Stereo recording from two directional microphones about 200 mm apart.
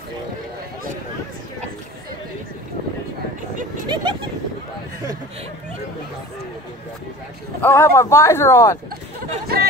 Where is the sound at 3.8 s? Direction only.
20° right (ahead or behind).